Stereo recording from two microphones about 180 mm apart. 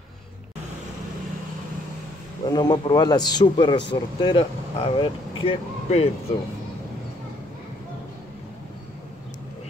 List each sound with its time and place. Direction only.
2.4 s speech: 25° left (ahead or behind)